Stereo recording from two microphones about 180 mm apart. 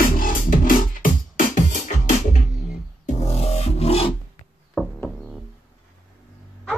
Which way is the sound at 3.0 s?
35° left (ahead or behind).